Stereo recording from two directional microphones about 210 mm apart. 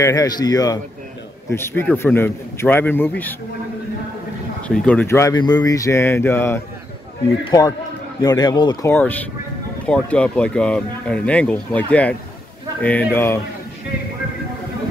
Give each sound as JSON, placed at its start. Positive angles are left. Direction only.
{"t": 0.0, "sound": "speech", "side_deg": 15}
{"t": 4.6, "sound": "speech", "side_deg": 5}
{"t": 8.2, "sound": "a man's voice", "side_deg": 20}
{"t": 8.9, "sound": "speech", "side_deg": 10}